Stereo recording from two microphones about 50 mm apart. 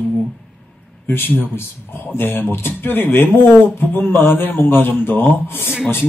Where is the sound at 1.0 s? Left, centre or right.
Left.